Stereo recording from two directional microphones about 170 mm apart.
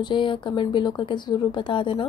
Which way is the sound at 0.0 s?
30° left (ahead or behind).